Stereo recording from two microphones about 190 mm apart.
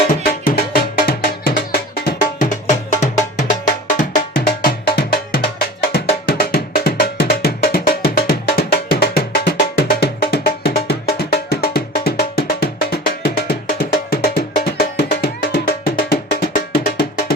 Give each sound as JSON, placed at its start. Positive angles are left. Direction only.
{"t": 0.3, "sound": "music", "side_deg": 50}
{"t": 2.6, "sound": "music", "side_deg": 40}
{"t": 16.3, "sound": "percussion", "side_deg": 55}